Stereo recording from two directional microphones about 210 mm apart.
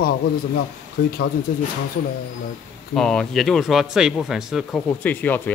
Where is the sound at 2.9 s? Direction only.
5° left (ahead or behind).